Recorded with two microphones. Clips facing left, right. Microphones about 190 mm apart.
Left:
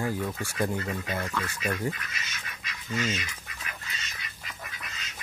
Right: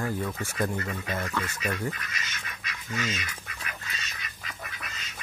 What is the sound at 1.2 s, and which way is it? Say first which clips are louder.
Speech: right 1 dB; 10° right (ahead or behind).